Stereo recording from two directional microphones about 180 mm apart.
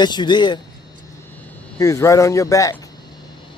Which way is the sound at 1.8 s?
20° left (ahead or behind).